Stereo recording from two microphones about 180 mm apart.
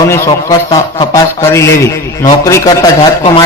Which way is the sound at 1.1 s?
15° left (ahead or behind).